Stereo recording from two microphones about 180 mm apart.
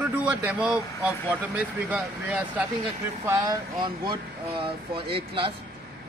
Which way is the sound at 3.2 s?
20° right (ahead or behind).